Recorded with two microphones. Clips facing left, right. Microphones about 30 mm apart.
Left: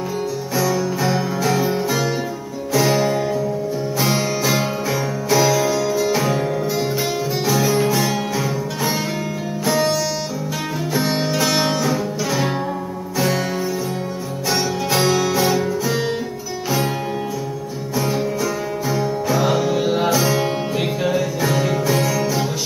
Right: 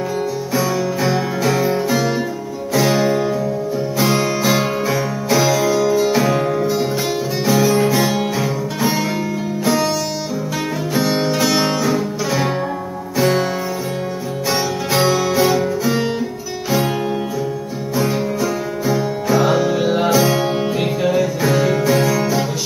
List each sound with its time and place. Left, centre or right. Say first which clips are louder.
0.6 s music: even; centre
4.5 s music: right 3 dB; centre
11.0 s music: right 3 dB; centre
14.5 s music: right 1 dB; centre
17.9 s music: right 2 dB; centre